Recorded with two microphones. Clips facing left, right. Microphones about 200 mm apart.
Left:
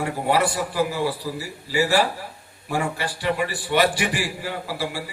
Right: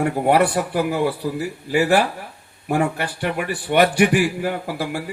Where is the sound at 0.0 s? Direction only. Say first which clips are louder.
Right 5 dB; 55° right (ahead or behind).